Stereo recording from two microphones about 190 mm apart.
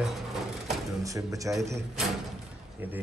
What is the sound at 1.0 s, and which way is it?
Speech, 15° right (ahead or behind).